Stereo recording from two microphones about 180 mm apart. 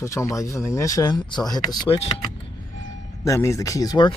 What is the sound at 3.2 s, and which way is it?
Speech, 15° left (ahead or behind).